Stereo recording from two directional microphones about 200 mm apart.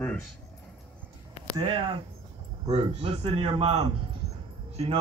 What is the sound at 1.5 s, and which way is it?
A man's voice, 25° right (ahead or behind).